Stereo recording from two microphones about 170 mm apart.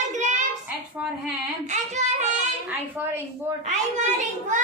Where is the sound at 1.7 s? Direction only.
45° right (ahead or behind).